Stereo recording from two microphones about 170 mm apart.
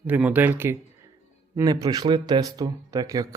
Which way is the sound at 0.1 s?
10° right (ahead or behind).